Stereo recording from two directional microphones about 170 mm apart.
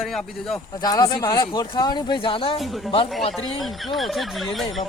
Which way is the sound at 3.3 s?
Centre (ahead or behind).